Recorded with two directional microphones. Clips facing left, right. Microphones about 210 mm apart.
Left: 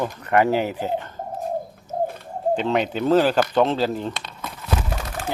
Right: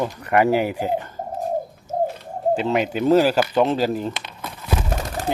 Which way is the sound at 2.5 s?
5° right (ahead or behind).